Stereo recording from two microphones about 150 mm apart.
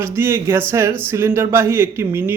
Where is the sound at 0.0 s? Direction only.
15° right (ahead or behind).